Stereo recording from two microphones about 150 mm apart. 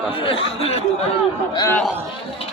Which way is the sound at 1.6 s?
15° left (ahead or behind).